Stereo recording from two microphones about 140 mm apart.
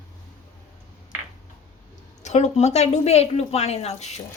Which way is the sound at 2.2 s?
55° left (ahead or behind).